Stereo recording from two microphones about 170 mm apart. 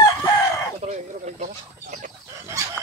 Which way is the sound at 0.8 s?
45° right (ahead or behind).